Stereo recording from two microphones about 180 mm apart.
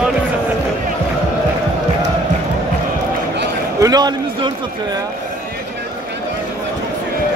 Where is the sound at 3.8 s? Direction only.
20° right (ahead or behind).